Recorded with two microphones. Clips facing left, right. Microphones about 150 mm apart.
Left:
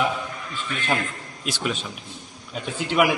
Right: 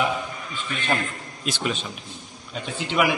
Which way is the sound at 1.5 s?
5° left (ahead or behind).